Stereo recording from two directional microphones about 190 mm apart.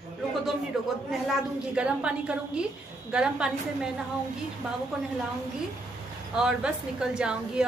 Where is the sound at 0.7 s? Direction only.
Centre (ahead or behind).